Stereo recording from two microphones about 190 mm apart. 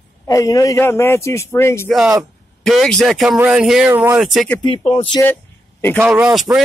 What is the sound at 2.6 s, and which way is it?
Speech, centre (ahead or behind).